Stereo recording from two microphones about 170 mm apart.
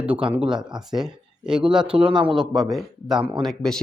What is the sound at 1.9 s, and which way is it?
Speech, 30° right (ahead or behind).